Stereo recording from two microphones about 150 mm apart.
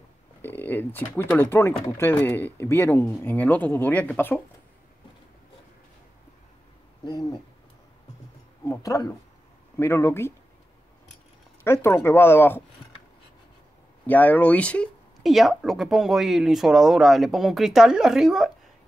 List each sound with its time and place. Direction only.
0.4 s speech: 15° left (ahead or behind)
7.1 s hoot: 30° left (ahead or behind)
8.6 s speech: 25° left (ahead or behind)
11.6 s speech: 15° left (ahead or behind)
14.0 s speech: 10° left (ahead or behind)